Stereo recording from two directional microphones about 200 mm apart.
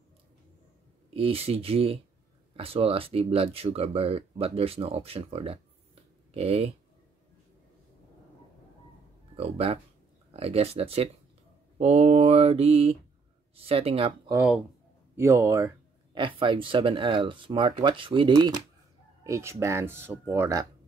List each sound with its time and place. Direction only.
1.1 s speech: 30° right (ahead or behind)
9.4 s speech: 30° right (ahead or behind)
10.3 s mantra: 30° right (ahead or behind)
13.6 s speech: 30° right (ahead or behind)
14.3 s speech: 5° right (ahead or behind)